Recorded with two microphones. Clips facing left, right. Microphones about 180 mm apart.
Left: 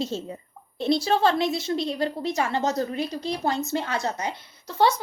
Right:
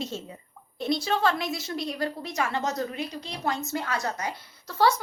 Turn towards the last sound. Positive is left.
turn(degrees=20)  # may be behind; listen again after turning